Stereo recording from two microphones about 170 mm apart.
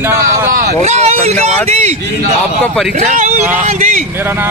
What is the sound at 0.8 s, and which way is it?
Speech, 40° right (ahead or behind).